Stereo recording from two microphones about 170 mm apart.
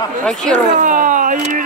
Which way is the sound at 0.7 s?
50° right (ahead or behind).